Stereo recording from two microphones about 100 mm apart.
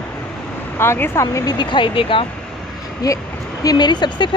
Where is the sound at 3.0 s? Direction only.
40° left (ahead or behind).